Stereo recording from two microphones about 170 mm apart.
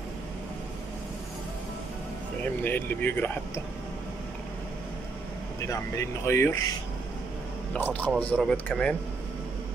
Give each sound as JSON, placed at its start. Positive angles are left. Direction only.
{"t": 2.4, "sound": "speech", "side_deg": 10}
{"t": 5.7, "sound": "speech", "side_deg": 15}
{"t": 7.7, "sound": "speech", "side_deg": 10}